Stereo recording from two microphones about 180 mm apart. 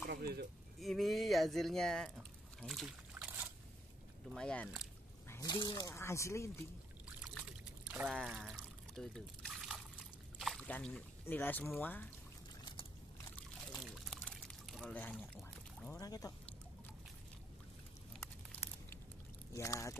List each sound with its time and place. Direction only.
0.1 s a sound: 60° right (ahead or behind)
0.7 s speech: centre (ahead or behind)
4.3 s speech: 5° left (ahead or behind)
5.3 s speech: 20° left (ahead or behind)
7.2 s trickle: 5° right (ahead or behind)
10.4 s speech: 5° left (ahead or behind)
13.7 s pour: centre (ahead or behind)
16.0 s speech: 20° left (ahead or behind)
18.2 s a sound: 15° left (ahead or behind)
19.5 s speech: 15° left (ahead or behind)